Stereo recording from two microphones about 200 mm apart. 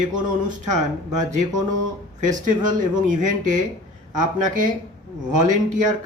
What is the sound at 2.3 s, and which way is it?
Speech, 40° right (ahead or behind).